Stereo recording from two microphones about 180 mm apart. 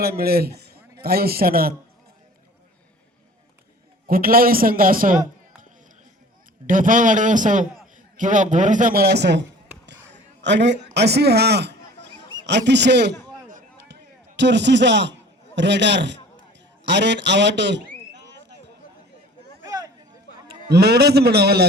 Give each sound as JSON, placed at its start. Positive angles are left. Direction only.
{"t": 0.0, "sound": "a man's voice", "side_deg": -60}
{"t": 4.0, "sound": "a man's voice", "side_deg": -55}
{"t": 6.7, "sound": "a man's voice", "side_deg": -45}
{"t": 10.4, "sound": "a man's voice", "side_deg": -70}
{"t": 14.3, "sound": "a man's voice", "side_deg": -75}
{"t": 19.6, "sound": "a sound", "side_deg": -20}
{"t": 20.5, "sound": "a man's voice", "side_deg": -65}